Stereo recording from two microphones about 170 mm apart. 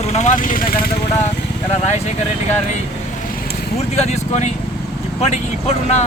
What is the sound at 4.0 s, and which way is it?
Speech, 40° left (ahead or behind).